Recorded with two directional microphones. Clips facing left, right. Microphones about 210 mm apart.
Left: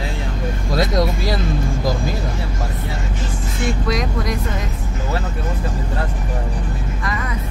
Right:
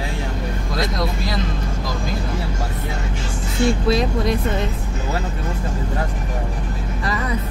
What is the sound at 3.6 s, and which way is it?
Speech, 30° right (ahead or behind).